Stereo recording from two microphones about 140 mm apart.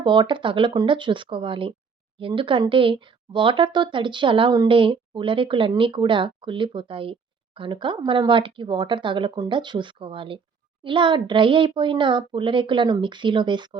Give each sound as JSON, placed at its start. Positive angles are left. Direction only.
{"t": 0.0, "sound": "speech", "side_deg": -35}